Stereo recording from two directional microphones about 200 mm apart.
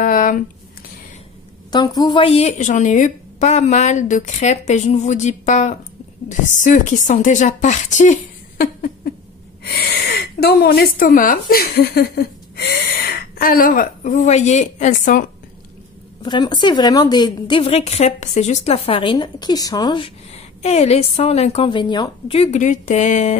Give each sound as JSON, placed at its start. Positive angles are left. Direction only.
{"t": 0.0, "sound": "a sound", "side_deg": 40}
{"t": 1.7, "sound": "a woman's voice", "side_deg": 20}
{"t": 16.2, "sound": "a woman's voice", "side_deg": 20}
{"t": 20.6, "sound": "a woman's voice", "side_deg": 30}